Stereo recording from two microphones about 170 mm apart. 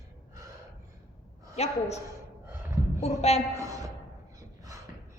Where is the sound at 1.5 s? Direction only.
40° left (ahead or behind).